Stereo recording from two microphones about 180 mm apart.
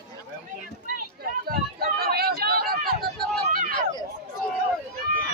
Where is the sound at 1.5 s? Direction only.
55° right (ahead or behind).